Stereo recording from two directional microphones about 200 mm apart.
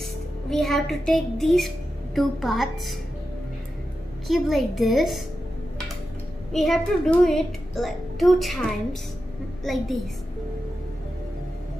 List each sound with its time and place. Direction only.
0.5 s a child's voice: centre (ahead or behind)
4.3 s a child's voice: centre (ahead or behind)
6.5 s a child's voice: centre (ahead or behind)